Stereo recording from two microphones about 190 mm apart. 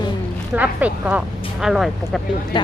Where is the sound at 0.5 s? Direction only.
10° right (ahead or behind).